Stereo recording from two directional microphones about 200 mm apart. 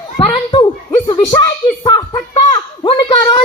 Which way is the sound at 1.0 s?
25° left (ahead or behind).